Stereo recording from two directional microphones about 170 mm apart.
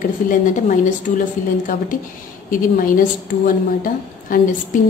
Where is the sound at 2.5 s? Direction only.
55° left (ahead or behind).